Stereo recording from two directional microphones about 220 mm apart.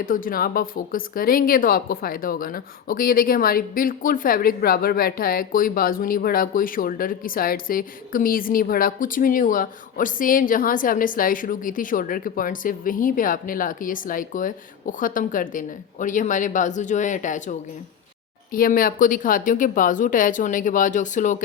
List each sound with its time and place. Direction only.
0.0 s speech: 40° left (ahead or behind)
18.5 s speech: 40° left (ahead or behind)